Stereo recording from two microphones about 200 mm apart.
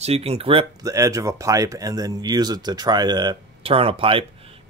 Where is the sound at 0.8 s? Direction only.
15° right (ahead or behind).